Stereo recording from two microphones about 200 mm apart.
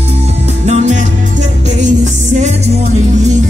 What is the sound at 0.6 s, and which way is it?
Music, 35° right (ahead or behind).